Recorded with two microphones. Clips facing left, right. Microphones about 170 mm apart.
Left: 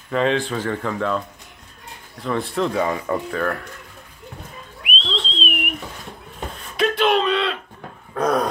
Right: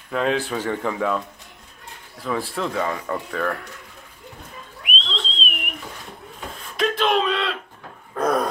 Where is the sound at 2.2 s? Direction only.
5° right (ahead or behind).